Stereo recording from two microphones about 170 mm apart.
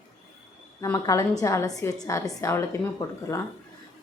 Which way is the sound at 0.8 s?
15° left (ahead or behind).